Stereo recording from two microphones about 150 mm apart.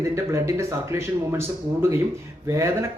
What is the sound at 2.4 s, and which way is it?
Speech, 20° right (ahead or behind).